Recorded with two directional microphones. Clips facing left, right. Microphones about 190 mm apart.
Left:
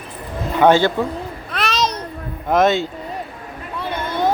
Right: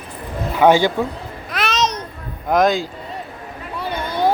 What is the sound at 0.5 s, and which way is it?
Speech, 10° right (ahead or behind).